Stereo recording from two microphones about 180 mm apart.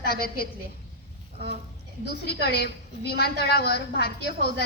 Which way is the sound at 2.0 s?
65° left (ahead or behind).